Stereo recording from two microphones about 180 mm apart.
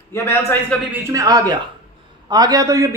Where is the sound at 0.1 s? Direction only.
15° left (ahead or behind).